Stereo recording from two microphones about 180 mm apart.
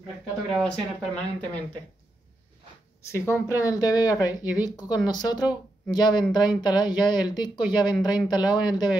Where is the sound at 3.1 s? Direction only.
15° left (ahead or behind).